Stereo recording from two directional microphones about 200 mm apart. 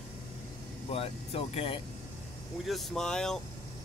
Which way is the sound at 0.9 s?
30° left (ahead or behind).